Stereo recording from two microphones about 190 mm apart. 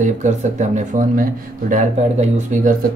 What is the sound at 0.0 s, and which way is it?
Speech, 40° right (ahead or behind).